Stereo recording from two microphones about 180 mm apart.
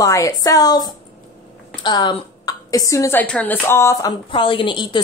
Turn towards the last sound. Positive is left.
turn(degrees=30)  # may be behind; listen again after turning